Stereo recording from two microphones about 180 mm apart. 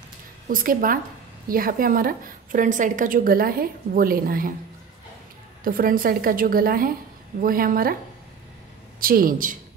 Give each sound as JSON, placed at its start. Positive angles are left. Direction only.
{"t": 0.5, "sound": "a woman's voice", "side_deg": -50}
{"t": 5.6, "sound": "a woman's voice", "side_deg": -50}
{"t": 9.0, "sound": "a woman's voice", "side_deg": -55}